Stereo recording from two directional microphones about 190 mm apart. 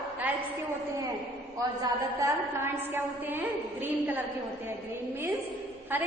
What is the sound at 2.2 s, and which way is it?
A woman's voice, 10° right (ahead or behind).